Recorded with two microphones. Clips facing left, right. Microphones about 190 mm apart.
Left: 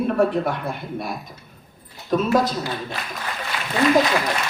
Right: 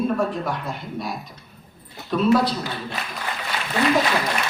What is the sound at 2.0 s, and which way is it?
Speech, 45° left (ahead or behind).